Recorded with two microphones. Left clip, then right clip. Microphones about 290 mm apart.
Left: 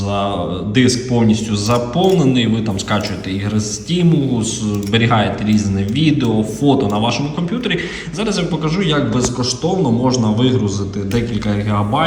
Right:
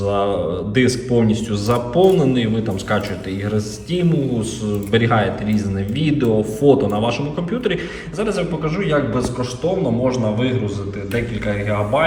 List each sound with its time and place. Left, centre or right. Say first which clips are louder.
0.1 s a man's voice: left 1 dB; centre
3.5 s a man's voice: left 1 dB; centre
11.4 s speech: left 1 dB; centre